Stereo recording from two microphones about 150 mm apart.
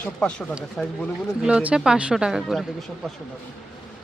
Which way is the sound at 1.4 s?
5° right (ahead or behind).